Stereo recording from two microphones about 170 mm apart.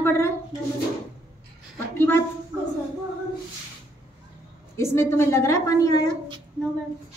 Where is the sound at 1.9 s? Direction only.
10° left (ahead or behind).